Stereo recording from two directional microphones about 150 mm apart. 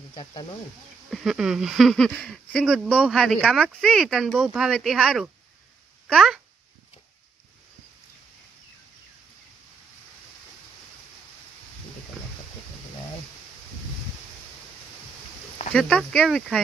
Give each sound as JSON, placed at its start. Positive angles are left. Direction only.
{"t": 0.1, "sound": "speech", "side_deg": 30}
{"t": 1.1, "sound": "speech", "side_deg": 0}
{"t": 2.7, "sound": "speech", "side_deg": -10}
{"t": 15.7, "sound": "speech", "side_deg": 5}